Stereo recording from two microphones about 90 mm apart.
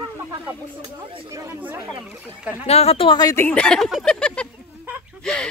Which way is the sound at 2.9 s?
90° left.